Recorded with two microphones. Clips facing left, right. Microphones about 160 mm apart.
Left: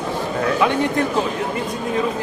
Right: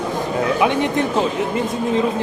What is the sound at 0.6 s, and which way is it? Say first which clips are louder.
Speech: even; 20° right (ahead or behind).